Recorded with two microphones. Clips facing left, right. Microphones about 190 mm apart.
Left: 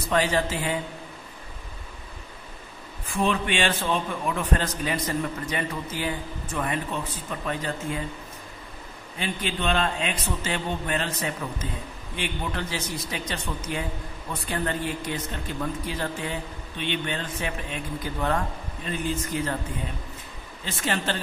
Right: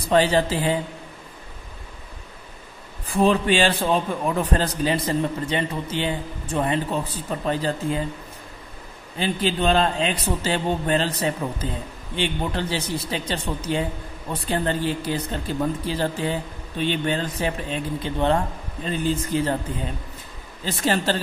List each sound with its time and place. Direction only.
0.1 s a man's voice: 30° right (ahead or behind)
3.1 s a man's voice: 35° right (ahead or behind)
9.2 s a man's voice: 35° right (ahead or behind)
20.6 s a man's voice: 35° right (ahead or behind)